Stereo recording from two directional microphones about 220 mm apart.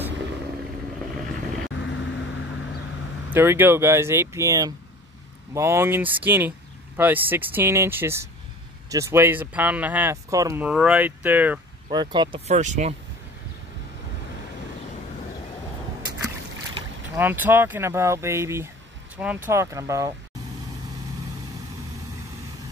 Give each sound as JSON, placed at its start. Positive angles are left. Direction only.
{"t": 1.7, "sound": "vehicle", "side_deg": 55}
{"t": 3.3, "sound": "speech", "side_deg": -10}
{"t": 11.9, "sound": "speech", "side_deg": -20}
{"t": 16.7, "sound": "speech", "side_deg": -10}